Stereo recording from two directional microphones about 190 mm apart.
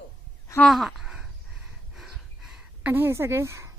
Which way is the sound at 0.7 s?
Centre (ahead or behind).